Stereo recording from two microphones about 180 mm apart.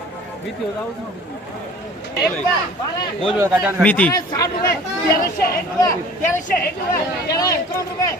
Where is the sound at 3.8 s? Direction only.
10° left (ahead or behind).